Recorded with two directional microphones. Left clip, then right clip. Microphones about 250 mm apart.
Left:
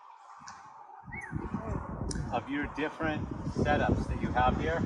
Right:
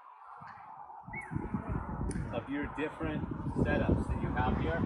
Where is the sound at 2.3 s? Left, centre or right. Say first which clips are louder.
Left 5 dB; left.